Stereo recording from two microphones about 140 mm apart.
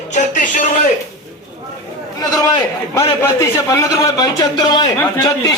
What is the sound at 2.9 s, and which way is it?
A man's voice, 20° left (ahead or behind).